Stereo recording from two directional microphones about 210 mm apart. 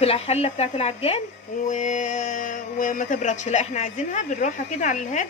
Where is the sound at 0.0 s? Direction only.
30° left (ahead or behind).